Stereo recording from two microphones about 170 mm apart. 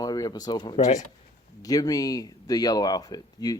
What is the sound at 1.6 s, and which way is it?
Speech, 20° left (ahead or behind).